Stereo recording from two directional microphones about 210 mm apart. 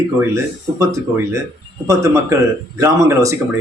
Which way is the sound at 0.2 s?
15° right (ahead or behind).